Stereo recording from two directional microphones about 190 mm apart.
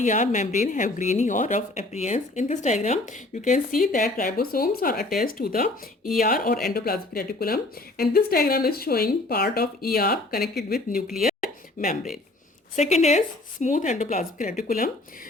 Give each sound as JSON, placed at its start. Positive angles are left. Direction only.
{"t": 0.0, "sound": "a woman's voice", "side_deg": 40}
{"t": 11.2, "sound": "a sound", "side_deg": 50}
{"t": 12.7, "sound": "speech", "side_deg": 35}